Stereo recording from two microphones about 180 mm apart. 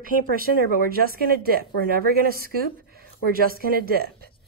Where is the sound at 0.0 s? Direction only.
50° right (ahead or behind).